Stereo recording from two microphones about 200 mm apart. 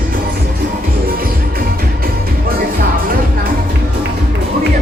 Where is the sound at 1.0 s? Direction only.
45° right (ahead or behind).